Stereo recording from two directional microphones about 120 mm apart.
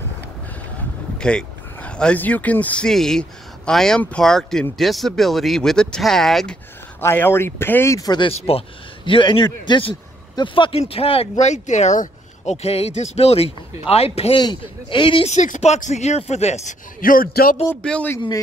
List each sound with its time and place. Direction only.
1.1 s speech: 10° left (ahead or behind)
7.0 s speech: 20° left (ahead or behind)
8.2 s speech: 55° left (ahead or behind)
11.3 s speech: 75° left (ahead or behind); by 14.4 s 55° left (ahead or behind)
14.4 s speech: 40° left (ahead or behind)
15.2 s speech: 85° left; by 16.7 s 65° left (ahead or behind)
17.8 s speech: 10° left (ahead or behind)